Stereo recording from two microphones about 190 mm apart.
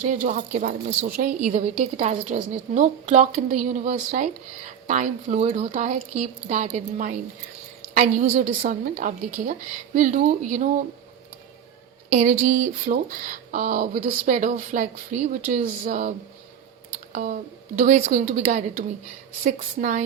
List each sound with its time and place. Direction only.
0.1 s speech: 40° right (ahead or behind)
1.5 s a woman's voice: 35° right (ahead or behind)
12.1 s a woman's voice: 40° right (ahead or behind)